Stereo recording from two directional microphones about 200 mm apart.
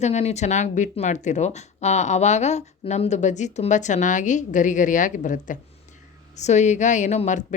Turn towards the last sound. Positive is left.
turn(degrees=35)  # may be behind; listen again after turning